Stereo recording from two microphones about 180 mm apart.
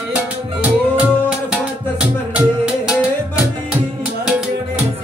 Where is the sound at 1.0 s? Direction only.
5° right (ahead or behind).